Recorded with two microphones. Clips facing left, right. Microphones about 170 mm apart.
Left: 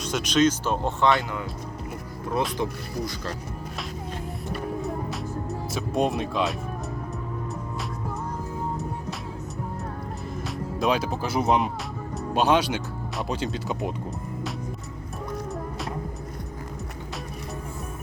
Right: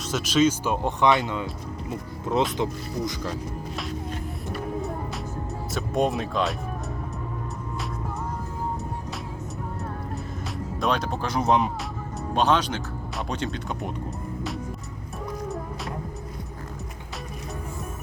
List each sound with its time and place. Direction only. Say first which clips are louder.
0.0 s speech: even; 5° right (ahead or behind); by 1.5 s 20° right (ahead or behind)
2.6 s speech: right 1 dB; 20° right (ahead or behind)
4.8 s music: left 1 dB; centre (ahead or behind)
10.8 s speech: left 1 dB; 5° left (ahead or behind)